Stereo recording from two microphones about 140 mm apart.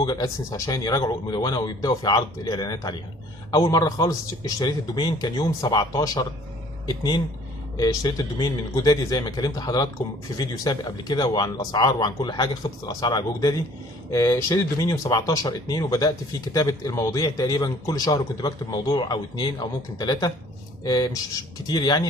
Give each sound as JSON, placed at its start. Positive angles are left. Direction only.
{"t": 0.0, "sound": "a man's voice", "side_deg": 25}